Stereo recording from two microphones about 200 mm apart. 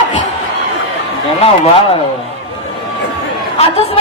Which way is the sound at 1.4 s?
30° left (ahead or behind).